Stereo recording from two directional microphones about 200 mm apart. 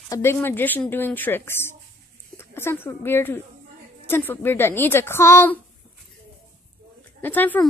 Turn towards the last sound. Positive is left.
turn(degrees=10)  # may be behind; listen again after turning